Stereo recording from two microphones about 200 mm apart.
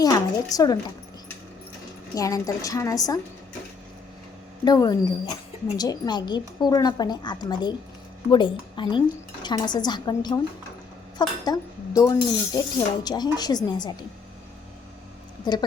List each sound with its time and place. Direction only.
0.0 s speech: 20° left (ahead or behind)
2.1 s a woman's voice: 15° left (ahead or behind)
4.6 s speech: 20° left (ahead or behind)
15.5 s speech: 20° left (ahead or behind)